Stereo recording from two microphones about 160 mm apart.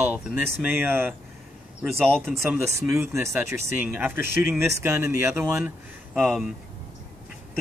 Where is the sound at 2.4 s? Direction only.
15° right (ahead or behind).